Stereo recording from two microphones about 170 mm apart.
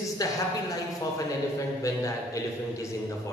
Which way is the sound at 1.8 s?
20° left (ahead or behind).